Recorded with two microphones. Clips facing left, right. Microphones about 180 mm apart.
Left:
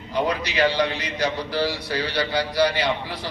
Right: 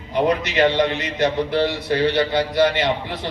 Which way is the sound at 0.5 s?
25° right (ahead or behind).